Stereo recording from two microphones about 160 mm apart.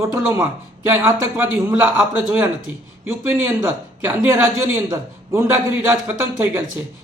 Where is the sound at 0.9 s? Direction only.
15° right (ahead or behind).